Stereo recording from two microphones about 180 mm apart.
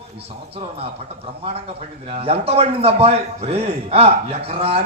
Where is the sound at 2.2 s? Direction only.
35° right (ahead or behind).